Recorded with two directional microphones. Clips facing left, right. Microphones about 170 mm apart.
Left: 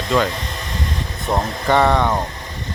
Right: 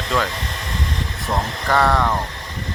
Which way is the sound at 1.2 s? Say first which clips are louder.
Left 4 dB; 20° left (ahead or behind).